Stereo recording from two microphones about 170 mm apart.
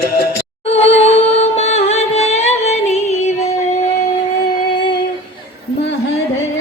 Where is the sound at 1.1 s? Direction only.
35° left (ahead or behind).